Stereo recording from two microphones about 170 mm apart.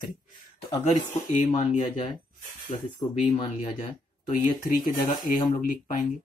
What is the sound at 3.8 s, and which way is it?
Speech, 50° left (ahead or behind).